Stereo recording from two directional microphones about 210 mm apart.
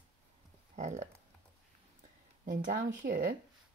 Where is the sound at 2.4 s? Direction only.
40° right (ahead or behind).